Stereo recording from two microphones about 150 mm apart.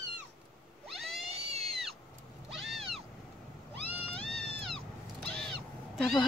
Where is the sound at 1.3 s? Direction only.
40° right (ahead or behind).